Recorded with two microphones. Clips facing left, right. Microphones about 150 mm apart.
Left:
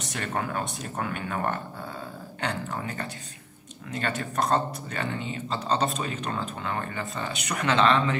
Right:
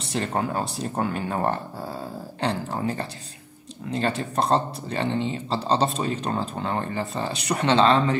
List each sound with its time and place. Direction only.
0.0 s speech: 30° right (ahead or behind)